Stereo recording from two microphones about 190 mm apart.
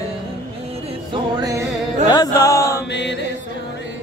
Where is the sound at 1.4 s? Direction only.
20° right (ahead or behind).